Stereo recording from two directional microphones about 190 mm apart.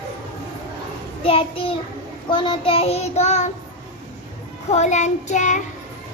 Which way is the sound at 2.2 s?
25° left (ahead or behind).